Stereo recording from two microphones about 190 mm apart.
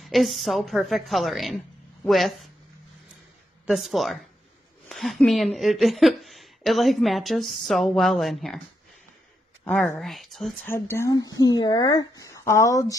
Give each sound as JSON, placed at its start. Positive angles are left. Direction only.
{"t": 0.0, "sound": "a woman's voice", "side_deg": 0}
{"t": 3.6, "sound": "a woman's voice", "side_deg": 0}
{"t": 9.7, "sound": "a woman's voice", "side_deg": 5}
{"t": 10.7, "sound": "speech", "side_deg": 15}